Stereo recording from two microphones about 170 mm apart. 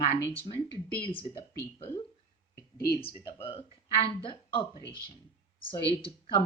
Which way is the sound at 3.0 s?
30° left (ahead or behind).